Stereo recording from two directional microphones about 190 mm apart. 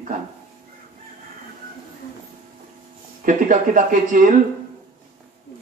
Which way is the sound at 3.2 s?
45° right (ahead or behind).